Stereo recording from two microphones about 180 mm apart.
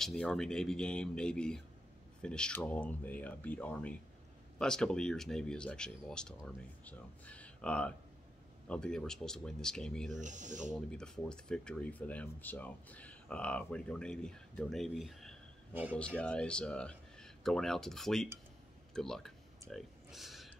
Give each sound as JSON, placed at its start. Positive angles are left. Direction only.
{"t": 0.0, "sound": "speech", "side_deg": 5}
{"t": 10.1, "sound": "speech", "side_deg": -45}
{"t": 10.7, "sound": "speech", "side_deg": 5}
{"t": 19.7, "sound": "a sound", "side_deg": 0}